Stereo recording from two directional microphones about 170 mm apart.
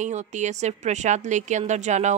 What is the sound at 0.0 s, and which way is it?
A woman's voice, 45° right (ahead or behind).